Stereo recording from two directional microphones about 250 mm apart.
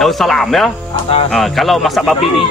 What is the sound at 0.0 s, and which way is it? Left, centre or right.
A man's voice, centre.